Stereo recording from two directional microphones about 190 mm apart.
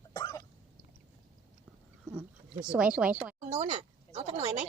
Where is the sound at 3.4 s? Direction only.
35° right (ahead or behind).